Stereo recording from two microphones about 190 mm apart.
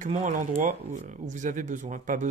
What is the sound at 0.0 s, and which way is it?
Speech, 40° right (ahead or behind).